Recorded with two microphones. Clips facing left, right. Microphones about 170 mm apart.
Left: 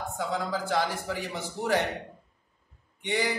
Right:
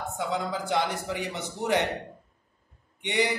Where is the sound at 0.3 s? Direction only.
20° right (ahead or behind).